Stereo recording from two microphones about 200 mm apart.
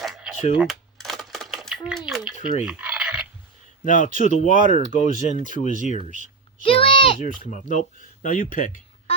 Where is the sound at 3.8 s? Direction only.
40° left (ahead or behind).